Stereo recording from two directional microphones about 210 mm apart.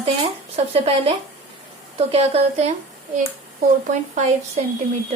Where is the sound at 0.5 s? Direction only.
30° right (ahead or behind).